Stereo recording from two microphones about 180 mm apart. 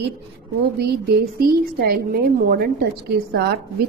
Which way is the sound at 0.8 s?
60° right (ahead or behind).